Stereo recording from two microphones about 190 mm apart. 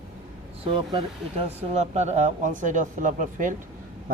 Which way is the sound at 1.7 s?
35° right (ahead or behind).